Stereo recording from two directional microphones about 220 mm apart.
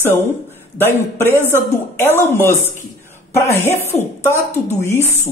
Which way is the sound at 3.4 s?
10° left (ahead or behind).